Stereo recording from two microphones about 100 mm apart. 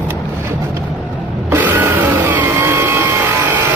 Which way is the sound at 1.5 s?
20° right (ahead or behind).